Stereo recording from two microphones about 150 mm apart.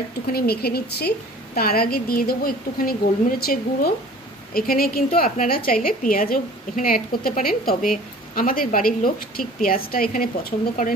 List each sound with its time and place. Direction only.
0.3 s a woman's voice: 90° left; by 10.3 s 75° left (ahead or behind)